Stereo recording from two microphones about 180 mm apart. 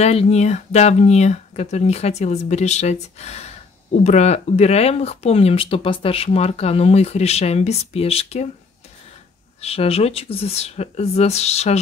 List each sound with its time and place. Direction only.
0.0 s speech: 35° left (ahead or behind)
9.6 s speech: 35° left (ahead or behind)